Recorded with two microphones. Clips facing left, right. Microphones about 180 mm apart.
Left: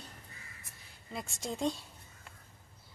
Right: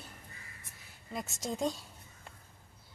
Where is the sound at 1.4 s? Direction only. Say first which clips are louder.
Even; centre (ahead or behind).